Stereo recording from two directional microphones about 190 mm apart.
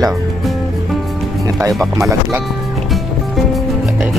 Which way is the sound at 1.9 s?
15° right (ahead or behind).